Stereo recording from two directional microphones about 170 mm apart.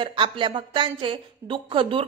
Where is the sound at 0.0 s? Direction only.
30° right (ahead or behind).